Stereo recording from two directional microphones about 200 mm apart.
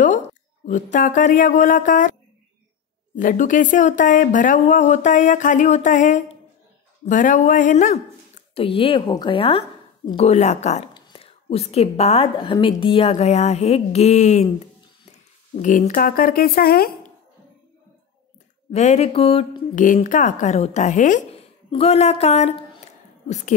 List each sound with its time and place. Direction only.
0.7 s a woman's voice: 40° left (ahead or behind)
3.2 s a woman's voice: 40° left (ahead or behind)
10.9 s a woman's voice: 20° left (ahead or behind)
15.6 s speech: 40° left (ahead or behind)
18.7 s a woman's voice: 35° left (ahead or behind)
19.8 s a woman's voice: 40° left (ahead or behind)